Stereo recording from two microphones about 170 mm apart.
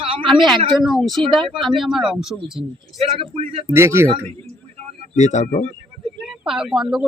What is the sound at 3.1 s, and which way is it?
Speech, 35° right (ahead or behind).